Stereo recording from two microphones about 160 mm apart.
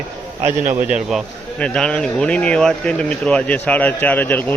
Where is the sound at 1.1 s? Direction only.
Centre (ahead or behind).